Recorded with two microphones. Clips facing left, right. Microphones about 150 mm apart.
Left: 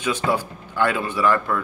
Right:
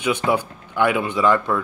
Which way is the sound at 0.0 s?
15° right (ahead or behind).